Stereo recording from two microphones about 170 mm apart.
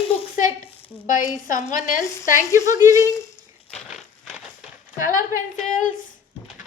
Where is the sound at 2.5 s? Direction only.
20° right (ahead or behind).